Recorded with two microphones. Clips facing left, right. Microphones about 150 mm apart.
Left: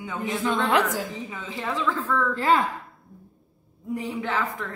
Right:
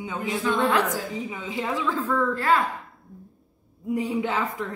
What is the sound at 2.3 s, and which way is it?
Speech, 20° left (ahead or behind).